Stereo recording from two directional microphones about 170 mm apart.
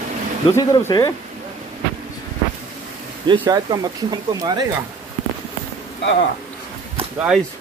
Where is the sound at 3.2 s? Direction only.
25° right (ahead or behind).